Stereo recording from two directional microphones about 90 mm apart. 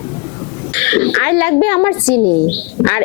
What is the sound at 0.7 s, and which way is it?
A child's voice, 20° left (ahead or behind).